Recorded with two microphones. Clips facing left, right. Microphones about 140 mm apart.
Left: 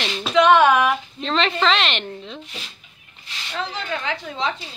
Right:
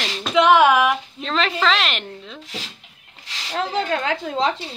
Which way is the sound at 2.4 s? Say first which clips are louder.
Right 4 dB; 90° right.